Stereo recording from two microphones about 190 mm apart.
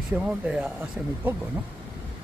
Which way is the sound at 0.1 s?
5° right (ahead or behind).